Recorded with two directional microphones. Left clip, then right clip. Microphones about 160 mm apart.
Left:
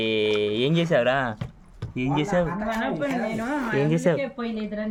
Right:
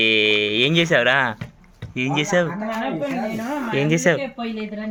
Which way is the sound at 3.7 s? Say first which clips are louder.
Right 5 dB; 5° left (ahead or behind).